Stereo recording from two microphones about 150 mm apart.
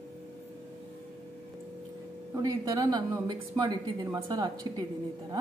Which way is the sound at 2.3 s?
25° right (ahead or behind).